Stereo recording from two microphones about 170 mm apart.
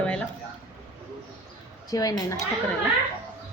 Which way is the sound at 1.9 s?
20° left (ahead or behind).